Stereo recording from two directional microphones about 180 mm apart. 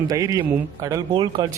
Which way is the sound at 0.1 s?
20° right (ahead or behind).